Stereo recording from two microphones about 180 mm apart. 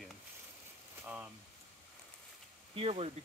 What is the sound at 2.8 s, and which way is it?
Speech, 35° right (ahead or behind).